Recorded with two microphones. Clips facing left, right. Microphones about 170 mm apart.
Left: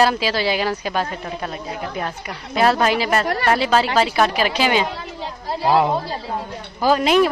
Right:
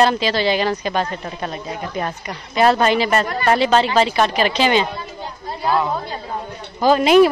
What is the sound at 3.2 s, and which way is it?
Speech, 70° left (ahead or behind).